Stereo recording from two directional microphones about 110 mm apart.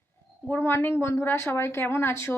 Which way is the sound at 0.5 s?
20° left (ahead or behind).